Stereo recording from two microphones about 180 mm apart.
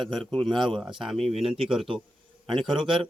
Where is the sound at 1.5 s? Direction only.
30° right (ahead or behind).